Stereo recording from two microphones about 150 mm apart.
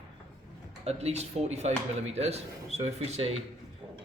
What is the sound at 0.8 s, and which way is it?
Speech, 45° right (ahead or behind).